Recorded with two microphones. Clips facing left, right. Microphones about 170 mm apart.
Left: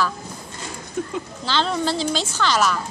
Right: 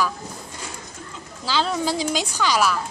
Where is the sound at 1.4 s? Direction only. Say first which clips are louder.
Even; 5° right (ahead or behind).